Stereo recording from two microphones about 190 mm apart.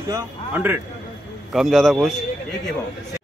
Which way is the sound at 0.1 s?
10° right (ahead or behind).